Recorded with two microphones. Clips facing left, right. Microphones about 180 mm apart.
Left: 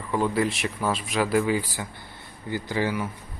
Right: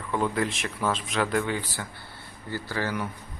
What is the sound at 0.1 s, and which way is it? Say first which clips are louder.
Speech: left 3 dB; centre (ahead or behind).